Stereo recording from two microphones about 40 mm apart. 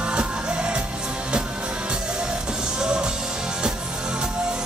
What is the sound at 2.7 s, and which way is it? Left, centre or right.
Music, right.